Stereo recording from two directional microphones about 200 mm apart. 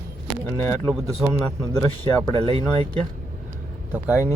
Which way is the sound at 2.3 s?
25° right (ahead or behind).